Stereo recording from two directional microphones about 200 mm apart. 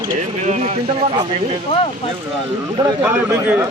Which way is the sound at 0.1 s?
40° right (ahead or behind).